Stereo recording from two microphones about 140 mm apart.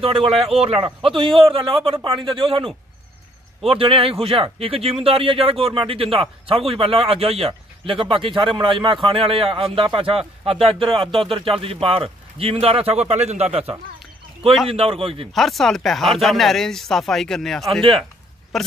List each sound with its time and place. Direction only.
0.0 s speech: 45° right (ahead or behind)
15.3 s speech: centre (ahead or behind)